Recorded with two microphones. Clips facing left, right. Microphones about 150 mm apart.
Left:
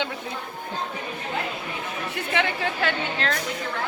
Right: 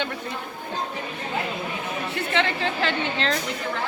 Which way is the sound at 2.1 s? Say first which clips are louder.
Right 1 dB; 10° left (ahead or behind).